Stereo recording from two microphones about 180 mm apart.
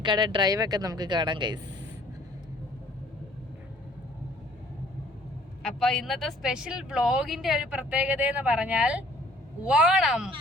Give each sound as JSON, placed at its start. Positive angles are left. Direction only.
{"t": 0.0, "sound": "speech", "side_deg": -25}
{"t": 5.6, "sound": "speech", "side_deg": 0}